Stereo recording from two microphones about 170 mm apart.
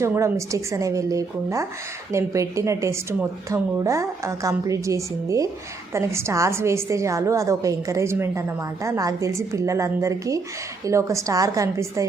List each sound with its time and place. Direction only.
0.0 s a woman's voice: 15° right (ahead or behind)